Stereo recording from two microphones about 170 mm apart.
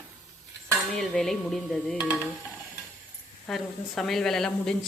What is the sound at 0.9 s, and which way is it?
Speech, centre (ahead or behind).